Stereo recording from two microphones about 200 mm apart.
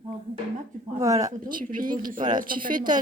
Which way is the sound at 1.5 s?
45° right (ahead or behind).